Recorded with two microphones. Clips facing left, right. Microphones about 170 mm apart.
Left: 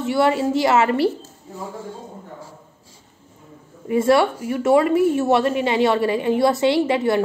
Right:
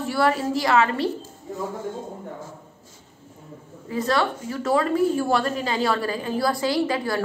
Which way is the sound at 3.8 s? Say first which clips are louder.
Left 7 dB; 25° left (ahead or behind).